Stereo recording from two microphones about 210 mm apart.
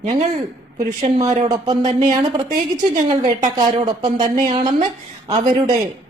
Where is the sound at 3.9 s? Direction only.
20° right (ahead or behind).